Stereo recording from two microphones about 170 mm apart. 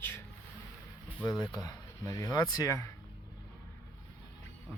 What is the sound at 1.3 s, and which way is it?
Speech, 20° left (ahead or behind).